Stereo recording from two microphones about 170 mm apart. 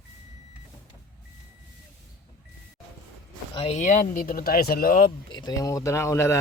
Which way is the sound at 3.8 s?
50° left (ahead or behind).